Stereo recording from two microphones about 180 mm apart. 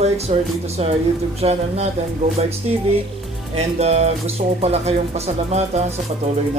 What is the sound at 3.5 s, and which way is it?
Speech, 35° right (ahead or behind).